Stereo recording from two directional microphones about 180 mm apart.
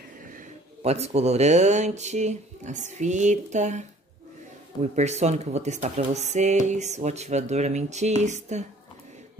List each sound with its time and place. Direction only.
0.8 s speech: 35° right (ahead or behind)
4.9 s speech: 40° right (ahead or behind)